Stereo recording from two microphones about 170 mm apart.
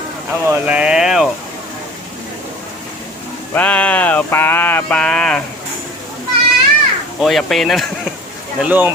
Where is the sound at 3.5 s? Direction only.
10° left (ahead or behind).